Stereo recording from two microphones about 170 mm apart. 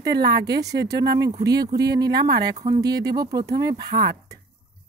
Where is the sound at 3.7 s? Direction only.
65° right (ahead or behind).